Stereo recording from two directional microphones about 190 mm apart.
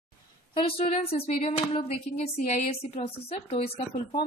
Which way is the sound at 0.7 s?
30° left (ahead or behind).